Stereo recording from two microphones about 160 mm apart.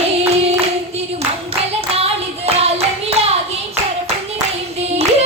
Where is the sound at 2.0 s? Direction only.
40° right (ahead or behind).